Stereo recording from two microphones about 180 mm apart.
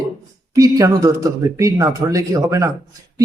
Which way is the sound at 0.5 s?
20° right (ahead or behind).